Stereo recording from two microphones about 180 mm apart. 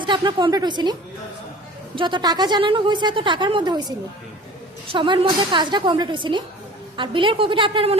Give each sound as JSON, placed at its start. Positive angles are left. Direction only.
{"t": 0.0, "sound": "a woman's voice", "side_deg": -25}
{"t": 2.0, "sound": "a woman's voice", "side_deg": -25}